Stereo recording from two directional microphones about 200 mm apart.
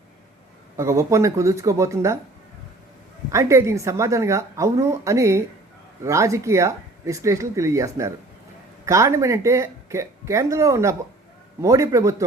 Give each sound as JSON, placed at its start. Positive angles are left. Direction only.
{"t": 0.8, "sound": "speech", "side_deg": -15}
{"t": 3.3, "sound": "speech", "side_deg": -15}